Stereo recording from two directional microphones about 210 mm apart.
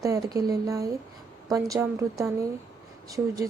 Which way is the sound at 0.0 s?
15° right (ahead or behind).